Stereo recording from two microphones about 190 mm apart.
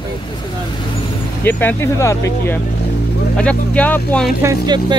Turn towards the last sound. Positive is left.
turn(degrees=-15)  # may be behind; listen again after turning